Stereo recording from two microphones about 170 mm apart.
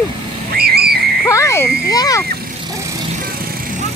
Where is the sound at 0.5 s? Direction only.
65° right (ahead or behind).